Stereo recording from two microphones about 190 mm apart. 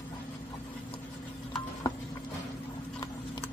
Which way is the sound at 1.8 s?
20° left (ahead or behind).